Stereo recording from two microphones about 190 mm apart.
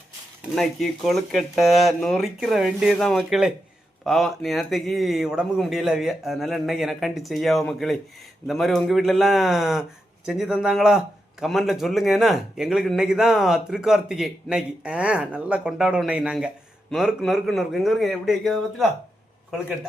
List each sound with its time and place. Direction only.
0.5 s a man's voice: centre (ahead or behind)